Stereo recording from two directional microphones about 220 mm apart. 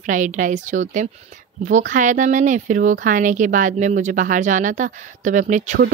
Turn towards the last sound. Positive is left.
turn(degrees=-35)  # may be behind; listen again after turning